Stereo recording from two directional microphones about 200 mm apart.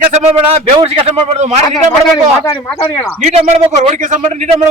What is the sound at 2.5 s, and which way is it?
Speech, 10° left (ahead or behind).